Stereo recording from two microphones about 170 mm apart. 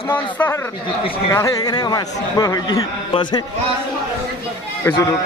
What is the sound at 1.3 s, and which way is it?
A man's voice, 20° left (ahead or behind).